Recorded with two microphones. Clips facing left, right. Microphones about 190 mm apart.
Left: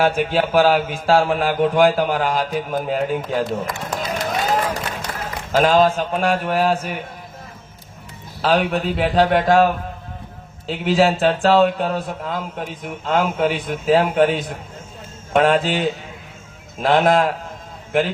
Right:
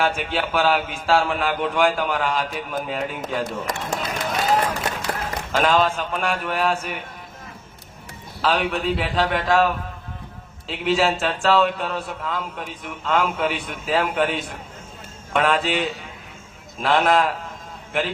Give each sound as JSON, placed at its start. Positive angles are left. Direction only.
{"t": 0.0, "sound": "speech", "side_deg": 40}
{"t": 3.8, "sound": "run", "side_deg": 40}
{"t": 5.5, "sound": "speech", "side_deg": 35}
{"t": 8.4, "sound": "speech", "side_deg": 40}